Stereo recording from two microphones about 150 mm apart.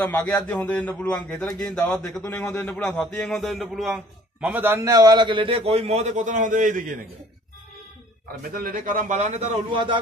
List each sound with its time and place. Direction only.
0.0 s a man's voice: 10° left (ahead or behind)
2.7 s a man's voice: 5° left (ahead or behind)
4.5 s a man's voice: 15° right (ahead or behind)
4.8 s a man's voice: 25° right (ahead or behind); by 7.0 s 60° right (ahead or behind)
8.3 s a man's voice: 75° right (ahead or behind); by 9.9 s 35° right (ahead or behind)